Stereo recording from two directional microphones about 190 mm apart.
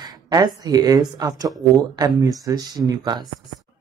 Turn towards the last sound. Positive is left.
turn(degrees=-20)  # may be behind; listen again after turning